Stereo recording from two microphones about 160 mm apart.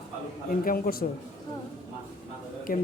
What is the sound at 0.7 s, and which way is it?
Speech, 65° left (ahead or behind).